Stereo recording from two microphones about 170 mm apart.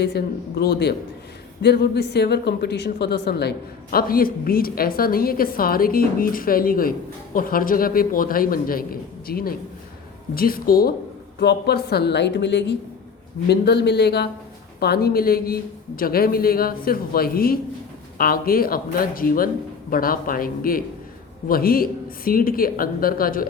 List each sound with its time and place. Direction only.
0.6 s speech: 70° left (ahead or behind)
3.9 s a woman's voice: 60° left (ahead or behind)
11.3 s speech: 70° left (ahead or behind); by 12.7 s 90° left
13.5 s a woman's voice: 80° left; by 23.5 s 55° left (ahead or behind)